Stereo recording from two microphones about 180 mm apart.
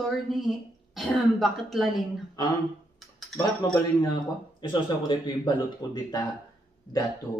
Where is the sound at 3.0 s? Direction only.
Centre (ahead or behind).